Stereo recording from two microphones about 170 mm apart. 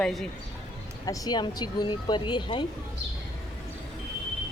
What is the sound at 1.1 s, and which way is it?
Speech, 25° left (ahead or behind).